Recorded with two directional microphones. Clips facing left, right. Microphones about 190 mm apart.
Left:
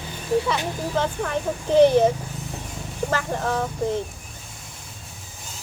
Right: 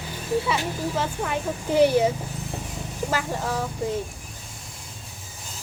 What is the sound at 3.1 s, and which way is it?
Speech, 10° right (ahead or behind).